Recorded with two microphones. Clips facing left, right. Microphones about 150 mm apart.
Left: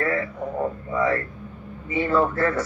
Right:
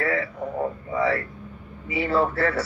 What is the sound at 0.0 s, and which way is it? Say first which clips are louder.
Radio: left 1 dB; 40° left (ahead or behind).